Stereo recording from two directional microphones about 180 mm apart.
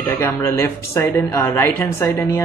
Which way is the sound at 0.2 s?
15° left (ahead or behind).